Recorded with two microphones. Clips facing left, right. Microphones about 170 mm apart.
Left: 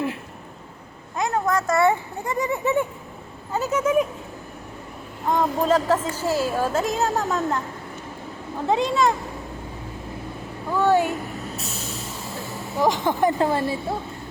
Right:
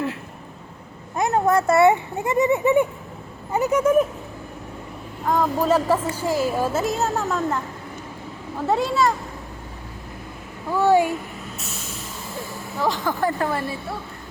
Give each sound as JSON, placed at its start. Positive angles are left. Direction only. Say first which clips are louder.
{"t": 1.3, "sound": "a child's voice", "louder": "right 4 dB", "side_deg": -30}
{"t": 5.3, "sound": "speech", "louder": "right 1 dB", "side_deg": -10}
{"t": 8.6, "sound": "speech", "louder": "even", "side_deg": -5}
{"t": 10.7, "sound": "speech", "louder": "right 2 dB", "side_deg": -10}
{"t": 12.7, "sound": "speech", "louder": "left 3 dB", "side_deg": 15}